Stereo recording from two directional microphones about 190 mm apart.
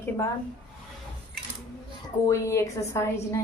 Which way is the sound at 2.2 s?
15° left (ahead or behind).